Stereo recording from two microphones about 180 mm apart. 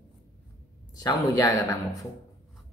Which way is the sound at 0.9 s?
20° left (ahead or behind).